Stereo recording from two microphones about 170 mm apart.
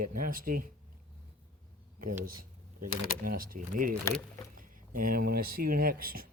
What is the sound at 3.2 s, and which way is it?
Speech, 55° right (ahead or behind).